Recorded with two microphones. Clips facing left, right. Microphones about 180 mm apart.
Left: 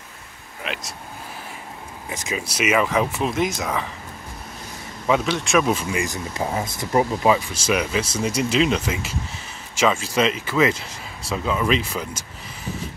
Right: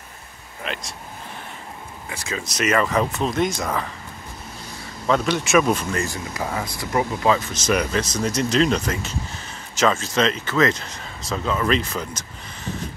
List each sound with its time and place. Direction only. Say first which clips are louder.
0.7 s vehicle: even; centre (ahead or behind)
2.0 s speech: left 2 dB; 20° left (ahead or behind)
2.5 s speech: even; 5° left (ahead or behind)
5.0 s speech: even; 5° left (ahead or behind); by 7.2 s 25° left (ahead or behind)
7.2 s speech: left 1 dB; 10° left (ahead or behind)